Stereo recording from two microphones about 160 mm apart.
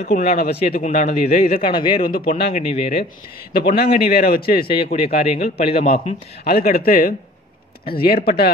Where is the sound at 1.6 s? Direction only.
30° left (ahead or behind).